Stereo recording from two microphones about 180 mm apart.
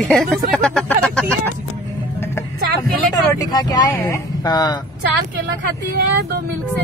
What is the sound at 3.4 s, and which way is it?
Speech, 20° left (ahead or behind).